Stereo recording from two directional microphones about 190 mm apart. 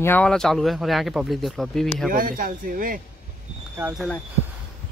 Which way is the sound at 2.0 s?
50° right (ahead or behind).